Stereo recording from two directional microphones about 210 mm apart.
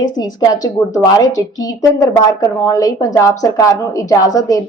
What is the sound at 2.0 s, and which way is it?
A woman's voice, 15° left (ahead or behind).